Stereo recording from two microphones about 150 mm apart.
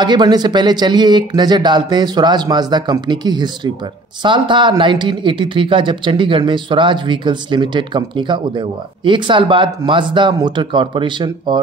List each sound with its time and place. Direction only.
0.0 s speech: 30° right (ahead or behind)